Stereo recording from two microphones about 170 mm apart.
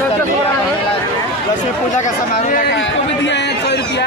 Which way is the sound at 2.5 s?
65° left (ahead or behind).